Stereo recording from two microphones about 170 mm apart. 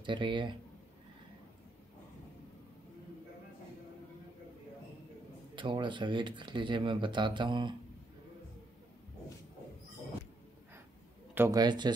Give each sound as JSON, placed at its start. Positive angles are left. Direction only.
{"t": 0.0, "sound": "speech", "side_deg": -30}
{"t": 5.6, "sound": "speech", "side_deg": -30}
{"t": 11.3, "sound": "speech", "side_deg": -20}